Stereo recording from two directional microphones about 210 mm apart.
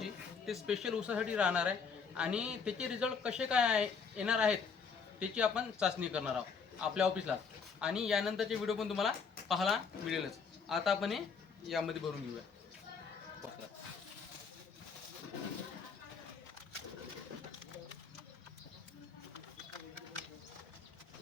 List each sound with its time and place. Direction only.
0.0 s speech: centre (ahead or behind)